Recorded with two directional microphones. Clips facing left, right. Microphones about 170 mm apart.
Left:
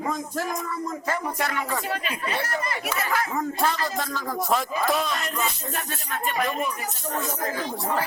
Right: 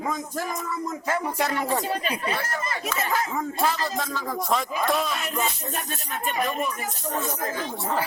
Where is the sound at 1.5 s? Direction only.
35° right (ahead or behind).